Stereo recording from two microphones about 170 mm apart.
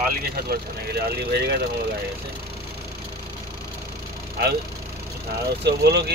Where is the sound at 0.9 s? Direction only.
70° right (ahead or behind).